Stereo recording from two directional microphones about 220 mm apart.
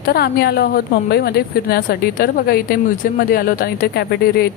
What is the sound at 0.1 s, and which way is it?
A woman's voice, 45° left (ahead or behind).